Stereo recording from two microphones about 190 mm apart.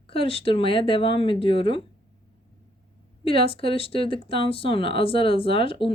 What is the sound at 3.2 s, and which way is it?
Speech, 30° left (ahead or behind).